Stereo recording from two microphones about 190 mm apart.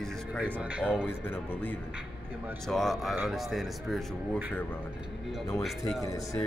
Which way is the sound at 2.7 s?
Centre (ahead or behind).